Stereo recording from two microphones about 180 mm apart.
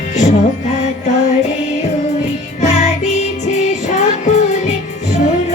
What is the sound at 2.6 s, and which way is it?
Music, 40° left (ahead or behind).